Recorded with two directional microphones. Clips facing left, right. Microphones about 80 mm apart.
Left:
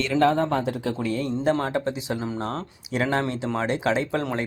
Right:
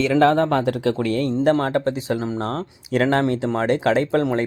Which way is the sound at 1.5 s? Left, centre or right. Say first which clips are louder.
Right 3 dB; right.